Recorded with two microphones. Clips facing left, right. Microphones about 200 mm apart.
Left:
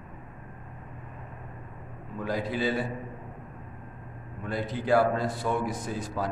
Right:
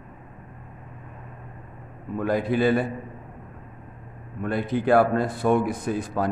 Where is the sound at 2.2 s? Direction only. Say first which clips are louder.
Right 7 dB; 55° right (ahead or behind).